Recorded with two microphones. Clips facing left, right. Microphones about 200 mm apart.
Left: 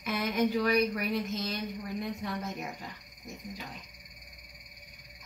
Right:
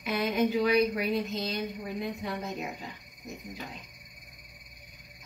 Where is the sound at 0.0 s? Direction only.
20° right (ahead or behind).